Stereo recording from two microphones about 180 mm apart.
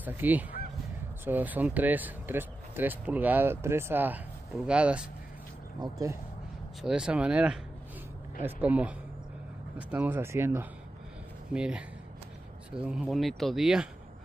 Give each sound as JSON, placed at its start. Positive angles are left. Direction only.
{"t": 0.0, "sound": "speech", "side_deg": -10}
{"t": 5.8, "sound": "speech", "side_deg": -20}
{"t": 6.8, "sound": "speech", "side_deg": -5}